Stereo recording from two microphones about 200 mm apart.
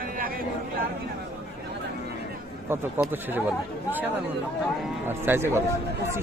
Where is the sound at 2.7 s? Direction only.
10° right (ahead or behind).